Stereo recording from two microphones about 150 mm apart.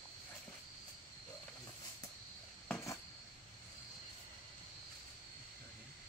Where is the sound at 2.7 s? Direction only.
20° left (ahead or behind).